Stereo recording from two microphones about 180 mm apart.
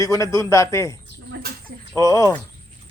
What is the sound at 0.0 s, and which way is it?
Speech, 20° left (ahead or behind).